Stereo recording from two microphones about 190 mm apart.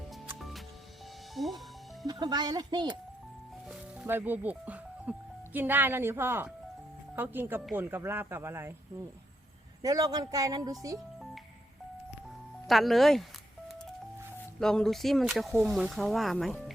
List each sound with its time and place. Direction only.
0.3 s music: centre (ahead or behind)
2.0 s speech: 20° right (ahead or behind)
3.7 s music: 10° right (ahead or behind)
5.5 s speech: 10° right (ahead or behind)
9.8 s speech: 20° right (ahead or behind)
12.6 s speech: centre (ahead or behind)
14.6 s speech: 5° left (ahead or behind)